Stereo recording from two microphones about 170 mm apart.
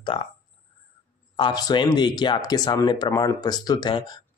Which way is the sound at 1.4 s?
25° left (ahead or behind).